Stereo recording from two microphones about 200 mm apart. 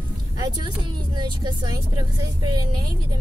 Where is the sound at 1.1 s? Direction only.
20° right (ahead or behind).